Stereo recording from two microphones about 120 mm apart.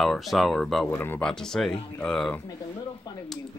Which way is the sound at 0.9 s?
15° left (ahead or behind).